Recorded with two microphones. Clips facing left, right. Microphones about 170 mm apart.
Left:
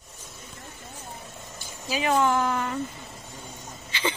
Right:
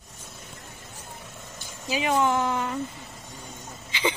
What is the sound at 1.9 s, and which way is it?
Speech, 20° right (ahead or behind).